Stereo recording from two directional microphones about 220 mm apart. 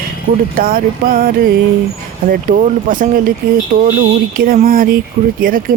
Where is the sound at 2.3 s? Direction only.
40° right (ahead or behind).